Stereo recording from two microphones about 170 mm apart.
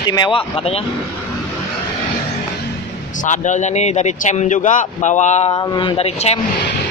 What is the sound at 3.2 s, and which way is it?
Speech, 45° left (ahead or behind).